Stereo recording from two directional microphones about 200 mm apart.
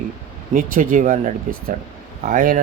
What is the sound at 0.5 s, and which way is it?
A man's voice, 40° right (ahead or behind).